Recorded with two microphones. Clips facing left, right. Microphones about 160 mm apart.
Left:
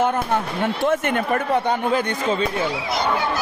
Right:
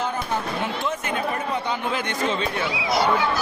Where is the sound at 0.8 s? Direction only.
55° left (ahead or behind).